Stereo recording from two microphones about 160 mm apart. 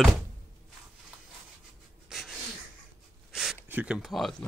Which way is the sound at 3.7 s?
5° right (ahead or behind).